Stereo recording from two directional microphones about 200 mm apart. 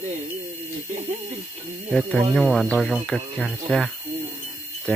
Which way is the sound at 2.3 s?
Centre (ahead or behind).